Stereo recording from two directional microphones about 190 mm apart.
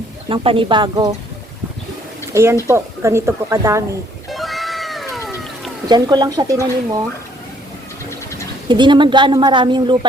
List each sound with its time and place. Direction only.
0.3 s speech: 25° right (ahead or behind)
2.3 s speech: 15° right (ahead or behind)
4.3 s cat: centre (ahead or behind)
5.9 s speech: 20° right (ahead or behind)
8.7 s speech: 25° right (ahead or behind)